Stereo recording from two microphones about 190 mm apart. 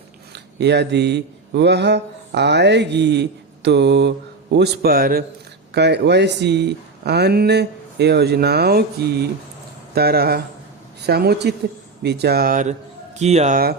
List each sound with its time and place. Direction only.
0.3 s speech: 65° right (ahead or behind)
5.7 s speech: 60° right (ahead or behind); by 13.6 s 35° right (ahead or behind)